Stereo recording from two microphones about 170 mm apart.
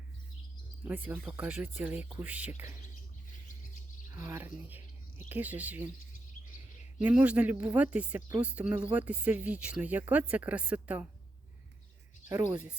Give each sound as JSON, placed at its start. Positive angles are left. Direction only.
{"t": 0.9, "sound": "speech", "side_deg": -10}
{"t": 4.1, "sound": "speech", "side_deg": -15}
{"t": 7.0, "sound": "speech", "side_deg": -10}
{"t": 12.3, "sound": "speech", "side_deg": -15}